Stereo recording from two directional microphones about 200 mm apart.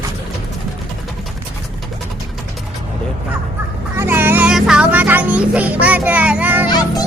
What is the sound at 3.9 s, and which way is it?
Speech, 10° right (ahead or behind).